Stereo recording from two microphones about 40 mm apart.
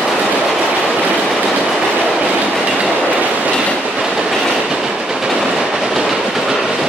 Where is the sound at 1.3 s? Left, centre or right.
Centre.